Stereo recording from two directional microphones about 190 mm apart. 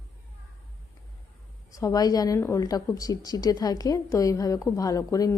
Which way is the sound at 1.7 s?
20° left (ahead or behind).